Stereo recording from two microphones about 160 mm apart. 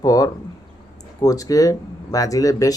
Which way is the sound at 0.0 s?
20° left (ahead or behind).